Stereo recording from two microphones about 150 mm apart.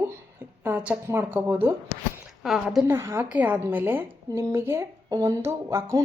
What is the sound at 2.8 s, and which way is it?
A woman's voice, 20° right (ahead or behind).